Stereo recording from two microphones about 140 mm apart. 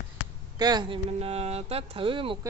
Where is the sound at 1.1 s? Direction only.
45° right (ahead or behind).